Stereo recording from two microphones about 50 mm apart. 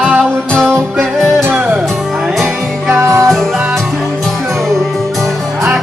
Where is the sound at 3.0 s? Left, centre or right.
Right.